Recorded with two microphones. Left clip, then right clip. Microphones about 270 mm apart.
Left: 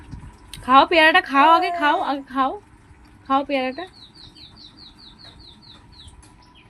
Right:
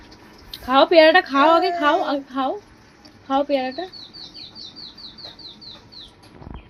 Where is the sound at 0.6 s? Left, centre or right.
Left.